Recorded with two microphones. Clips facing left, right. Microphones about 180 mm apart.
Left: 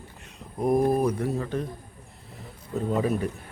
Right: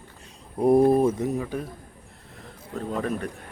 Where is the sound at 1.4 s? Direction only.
5° right (ahead or behind).